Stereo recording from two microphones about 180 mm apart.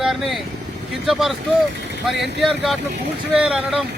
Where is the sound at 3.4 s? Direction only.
5° right (ahead or behind).